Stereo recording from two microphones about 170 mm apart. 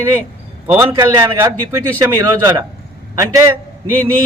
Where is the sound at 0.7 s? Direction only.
15° right (ahead or behind).